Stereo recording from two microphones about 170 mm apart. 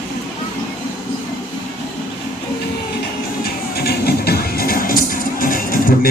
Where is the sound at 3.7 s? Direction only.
65° left (ahead or behind).